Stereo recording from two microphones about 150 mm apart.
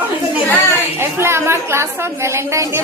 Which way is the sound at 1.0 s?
15° right (ahead or behind).